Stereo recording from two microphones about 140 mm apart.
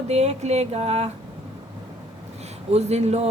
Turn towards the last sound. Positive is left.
turn(degrees=-50)  # may be behind; listen again after turning